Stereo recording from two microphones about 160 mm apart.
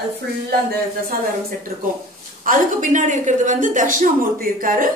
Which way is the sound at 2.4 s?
55° right (ahead or behind).